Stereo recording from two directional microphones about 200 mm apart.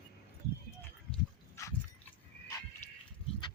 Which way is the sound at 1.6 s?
15° left (ahead or behind).